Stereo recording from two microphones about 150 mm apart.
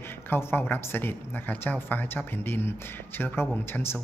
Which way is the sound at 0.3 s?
15° left (ahead or behind).